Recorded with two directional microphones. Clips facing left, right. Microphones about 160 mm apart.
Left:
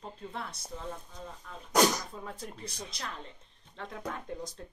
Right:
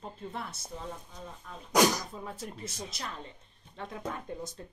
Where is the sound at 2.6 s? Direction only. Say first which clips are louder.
Right 2 dB; 25° right (ahead or behind).